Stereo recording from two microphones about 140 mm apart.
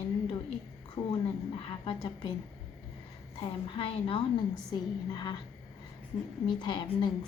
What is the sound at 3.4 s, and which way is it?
Speech, 40° left (ahead or behind).